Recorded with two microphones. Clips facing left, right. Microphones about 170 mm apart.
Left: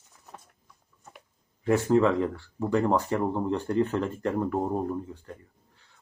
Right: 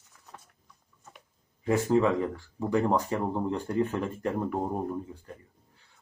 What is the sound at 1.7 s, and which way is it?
Speech, 15° right (ahead or behind).